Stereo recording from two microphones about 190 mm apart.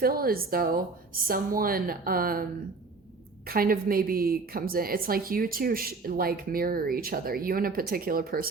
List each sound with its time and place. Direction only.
0.0 s a woman's voice: 50° right (ahead or behind)